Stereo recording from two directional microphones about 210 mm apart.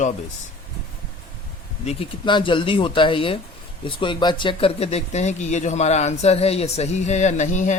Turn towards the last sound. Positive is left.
turn(degrees=35)  # may be behind; listen again after turning